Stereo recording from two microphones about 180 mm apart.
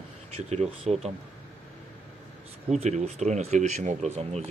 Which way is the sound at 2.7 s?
40° right (ahead or behind).